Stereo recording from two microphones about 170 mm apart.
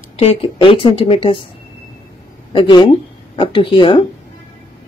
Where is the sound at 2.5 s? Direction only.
25° left (ahead or behind).